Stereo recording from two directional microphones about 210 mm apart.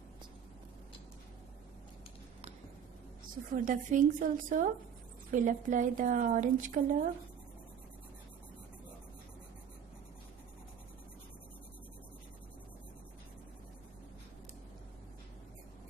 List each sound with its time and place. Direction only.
3.5 s a woman's voice: 40° right (ahead or behind)